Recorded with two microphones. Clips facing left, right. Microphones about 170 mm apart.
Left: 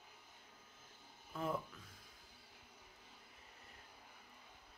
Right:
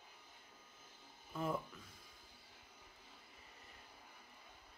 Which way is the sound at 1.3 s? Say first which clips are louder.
Right 1 dB; 5° right (ahead or behind).